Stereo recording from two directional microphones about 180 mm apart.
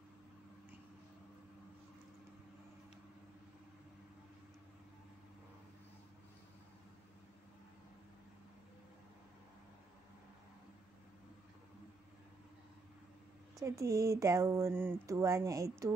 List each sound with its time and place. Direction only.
13.6 s speech: 15° right (ahead or behind)